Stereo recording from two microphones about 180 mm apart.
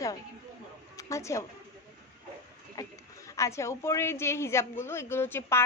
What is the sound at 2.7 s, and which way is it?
A woman's voice, 15° left (ahead or behind).